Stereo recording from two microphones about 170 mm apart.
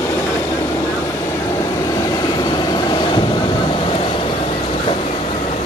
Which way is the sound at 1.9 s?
20° left (ahead or behind).